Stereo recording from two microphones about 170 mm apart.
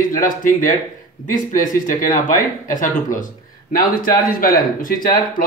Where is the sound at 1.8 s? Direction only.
50° left (ahead or behind).